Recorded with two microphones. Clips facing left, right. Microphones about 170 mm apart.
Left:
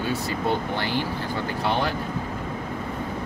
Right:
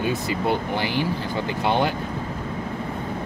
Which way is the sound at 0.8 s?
15° right (ahead or behind).